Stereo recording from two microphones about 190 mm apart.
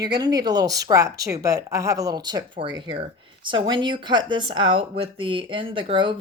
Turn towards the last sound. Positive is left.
turn(degrees=-25)  # may be behind; listen again after turning